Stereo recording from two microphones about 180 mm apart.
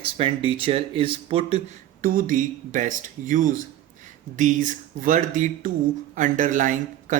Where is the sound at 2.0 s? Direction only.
50° right (ahead or behind).